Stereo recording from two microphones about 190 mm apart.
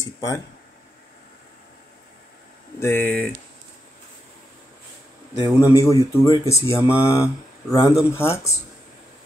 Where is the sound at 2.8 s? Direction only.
10° left (ahead or behind).